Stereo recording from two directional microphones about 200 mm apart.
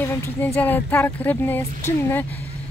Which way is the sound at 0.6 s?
10° left (ahead or behind).